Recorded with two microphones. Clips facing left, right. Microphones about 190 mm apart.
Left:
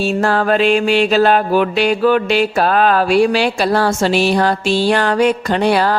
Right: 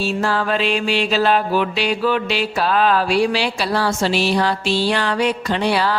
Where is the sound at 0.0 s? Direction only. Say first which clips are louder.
Left 5 dB; 55° left (ahead or behind).